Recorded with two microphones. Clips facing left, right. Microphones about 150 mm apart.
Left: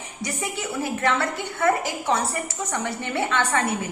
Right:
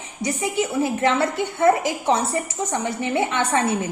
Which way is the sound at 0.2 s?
20° right (ahead or behind).